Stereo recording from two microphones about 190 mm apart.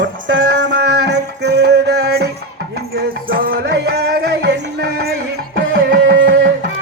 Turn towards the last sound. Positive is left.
turn(degrees=-50)  # may be behind; listen again after turning